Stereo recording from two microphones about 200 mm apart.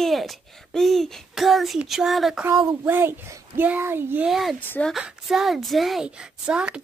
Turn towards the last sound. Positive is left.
turn(degrees=-5)  # may be behind; listen again after turning